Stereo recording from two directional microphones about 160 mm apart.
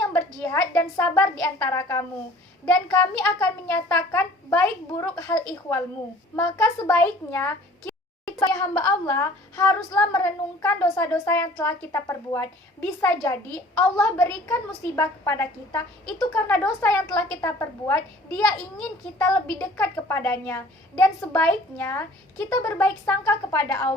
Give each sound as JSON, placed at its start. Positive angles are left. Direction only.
{"t": 0.0, "sound": "a woman's voice", "side_deg": 15}